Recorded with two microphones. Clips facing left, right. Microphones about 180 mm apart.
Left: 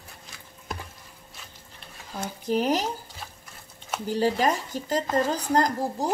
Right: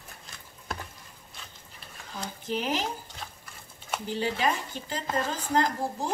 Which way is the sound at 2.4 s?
40° left (ahead or behind).